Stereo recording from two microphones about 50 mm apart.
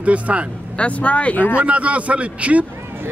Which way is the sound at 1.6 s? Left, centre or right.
Right.